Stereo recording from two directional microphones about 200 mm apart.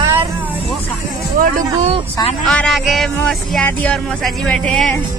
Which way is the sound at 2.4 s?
5° left (ahead or behind).